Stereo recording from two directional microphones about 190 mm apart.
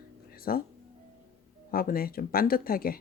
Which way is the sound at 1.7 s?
50° left (ahead or behind).